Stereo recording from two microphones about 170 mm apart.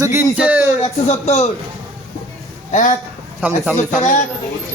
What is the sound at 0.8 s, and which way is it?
Speech, 40° left (ahead or behind).